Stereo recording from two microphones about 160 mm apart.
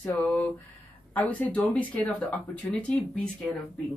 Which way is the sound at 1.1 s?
10° left (ahead or behind).